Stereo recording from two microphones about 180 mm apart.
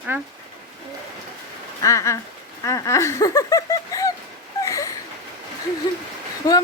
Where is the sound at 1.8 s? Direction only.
15° left (ahead or behind).